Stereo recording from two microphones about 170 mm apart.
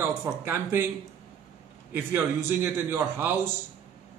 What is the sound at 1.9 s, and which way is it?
A man's voice, 15° right (ahead or behind).